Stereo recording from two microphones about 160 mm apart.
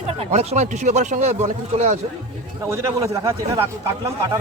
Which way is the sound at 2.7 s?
20° right (ahead or behind).